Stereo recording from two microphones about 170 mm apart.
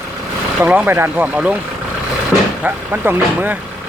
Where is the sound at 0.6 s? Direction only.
10° right (ahead or behind).